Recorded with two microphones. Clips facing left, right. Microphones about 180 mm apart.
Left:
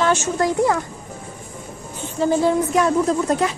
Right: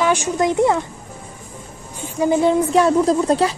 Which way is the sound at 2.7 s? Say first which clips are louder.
Right 3 dB; 30° right (ahead or behind).